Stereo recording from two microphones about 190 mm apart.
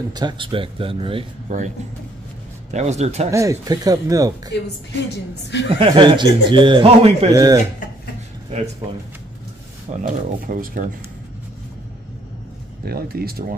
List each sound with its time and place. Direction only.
0.1 s a man's voice: 20° right (ahead or behind)
1.5 s speech: 40° right (ahead or behind)
2.7 s speech: 35° right (ahead or behind)
3.3 s a man's voice: 15° right (ahead or behind)
4.5 s a woman's voice: 65° left (ahead or behind)
5.7 s a man's voice: 25° right (ahead or behind)
7.3 s a man's voice: 20° right (ahead or behind)
9.8 s speech: 45° right (ahead or behind)
12.8 s speech: 55° right (ahead or behind)